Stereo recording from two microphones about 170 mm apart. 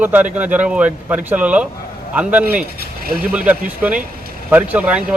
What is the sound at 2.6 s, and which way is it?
Speech, 60° right (ahead or behind).